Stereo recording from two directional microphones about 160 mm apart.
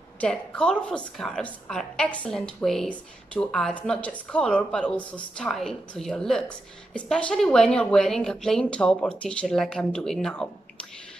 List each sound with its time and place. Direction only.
0.2 s a woman's voice: 5° left (ahead or behind)